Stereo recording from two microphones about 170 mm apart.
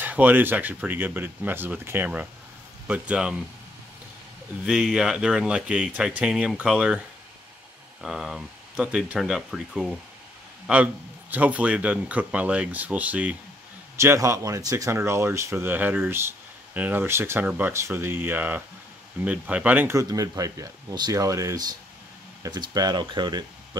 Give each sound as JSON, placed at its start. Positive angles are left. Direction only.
{"t": 0.0, "sound": "speech", "side_deg": -10}
{"t": 4.6, "sound": "speech", "side_deg": -5}
{"t": 8.0, "sound": "speech", "side_deg": 0}